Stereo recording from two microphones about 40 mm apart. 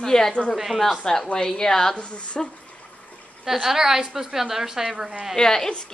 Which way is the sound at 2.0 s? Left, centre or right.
Left.